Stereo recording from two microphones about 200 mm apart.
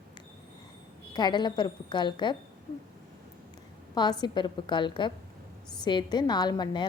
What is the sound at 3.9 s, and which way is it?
A woman's voice, 20° left (ahead or behind).